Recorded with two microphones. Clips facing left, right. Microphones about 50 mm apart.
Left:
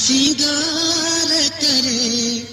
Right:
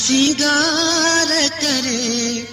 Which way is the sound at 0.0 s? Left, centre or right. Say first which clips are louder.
Right 2 dB; right.